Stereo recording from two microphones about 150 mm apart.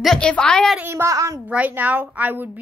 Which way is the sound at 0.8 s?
15° right (ahead or behind).